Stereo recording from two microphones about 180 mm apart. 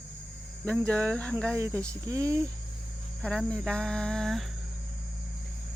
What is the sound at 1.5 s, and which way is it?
Speech, 15° right (ahead or behind).